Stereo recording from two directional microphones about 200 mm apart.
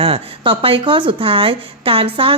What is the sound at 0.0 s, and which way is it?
Speech, 25° right (ahead or behind).